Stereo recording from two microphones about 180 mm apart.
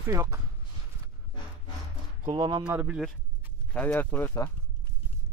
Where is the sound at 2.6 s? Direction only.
5° right (ahead or behind).